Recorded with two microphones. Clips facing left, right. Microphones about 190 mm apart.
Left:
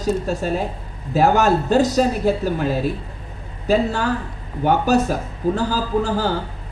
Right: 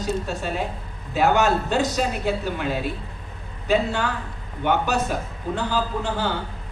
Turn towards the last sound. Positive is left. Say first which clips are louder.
# left 6 dB
turn(degrees=40)  # may be behind; listen again after turning